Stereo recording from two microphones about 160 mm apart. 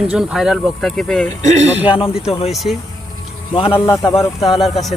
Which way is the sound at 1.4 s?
45° right (ahead or behind).